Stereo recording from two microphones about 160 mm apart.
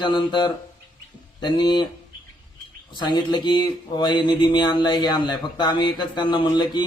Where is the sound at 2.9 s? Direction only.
25° left (ahead or behind).